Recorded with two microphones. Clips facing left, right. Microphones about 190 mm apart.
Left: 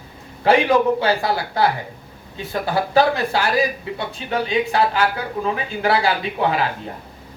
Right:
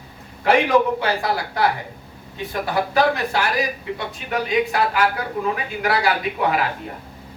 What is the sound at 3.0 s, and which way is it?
Speech, 30° left (ahead or behind).